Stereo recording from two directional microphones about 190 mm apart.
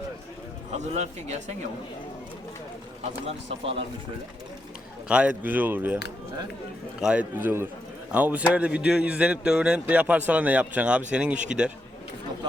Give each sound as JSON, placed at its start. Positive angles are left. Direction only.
{"t": 0.9, "sound": "speech", "side_deg": -35}
{"t": 3.2, "sound": "speech", "side_deg": -30}
{"t": 5.0, "sound": "a man's voice", "side_deg": -5}
{"t": 7.0, "sound": "a man's voice", "side_deg": -5}